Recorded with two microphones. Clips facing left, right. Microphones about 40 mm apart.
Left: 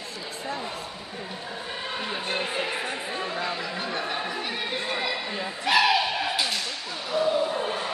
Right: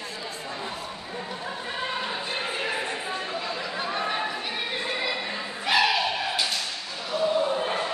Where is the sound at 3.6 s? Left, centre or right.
Centre.